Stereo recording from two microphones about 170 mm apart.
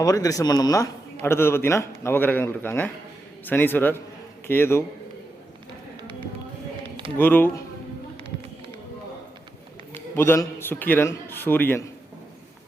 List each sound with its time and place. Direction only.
0.0 s a man's voice: 20° left (ahead or behind)
7.2 s a man's voice: 10° left (ahead or behind)
9.9 s a man's voice: 15° left (ahead or behind)